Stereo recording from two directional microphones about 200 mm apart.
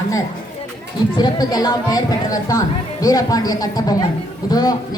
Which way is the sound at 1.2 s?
20° left (ahead or behind).